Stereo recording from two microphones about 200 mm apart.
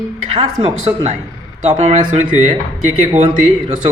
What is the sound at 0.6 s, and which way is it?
A man's voice, 30° right (ahead or behind).